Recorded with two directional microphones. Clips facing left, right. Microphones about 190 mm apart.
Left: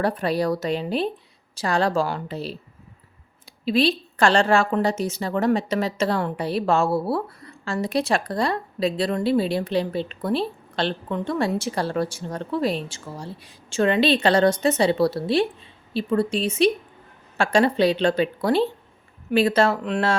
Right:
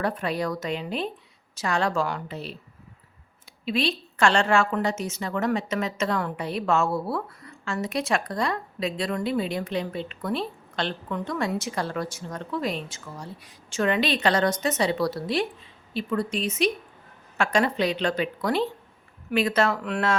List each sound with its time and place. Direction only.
0.0 s a woman's voice: 35° left (ahead or behind)
3.7 s a woman's voice: 35° left (ahead or behind)